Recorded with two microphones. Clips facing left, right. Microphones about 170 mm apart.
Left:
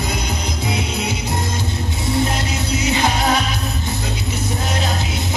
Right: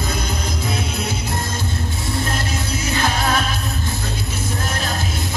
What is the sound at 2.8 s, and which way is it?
Music, 20° left (ahead or behind).